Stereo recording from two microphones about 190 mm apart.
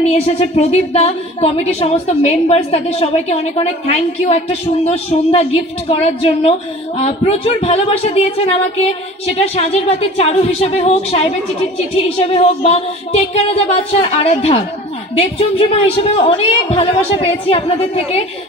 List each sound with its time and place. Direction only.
0.0 s a woman's voice: 35° left (ahead or behind)
16.0 s a woman's voice: 30° left (ahead or behind)